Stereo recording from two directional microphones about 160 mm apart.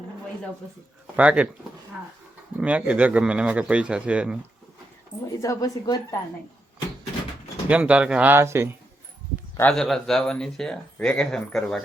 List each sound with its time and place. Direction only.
1.1 s a man's voice: 10° right (ahead or behind)
2.6 s a man's voice: 10° right (ahead or behind)
5.4 s a woman's voice: 20° left (ahead or behind)
7.7 s a man's voice: 10° right (ahead or behind)
9.6 s speech: 5° left (ahead or behind)